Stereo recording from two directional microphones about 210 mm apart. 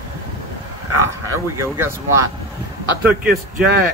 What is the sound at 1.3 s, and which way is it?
Speech, 10° right (ahead or behind).